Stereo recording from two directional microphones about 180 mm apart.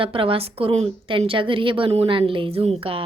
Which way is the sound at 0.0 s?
30° right (ahead or behind).